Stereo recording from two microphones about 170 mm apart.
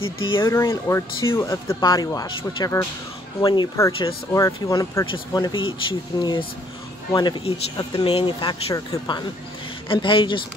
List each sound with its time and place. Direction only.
0.4 s speech: 15° left (ahead or behind)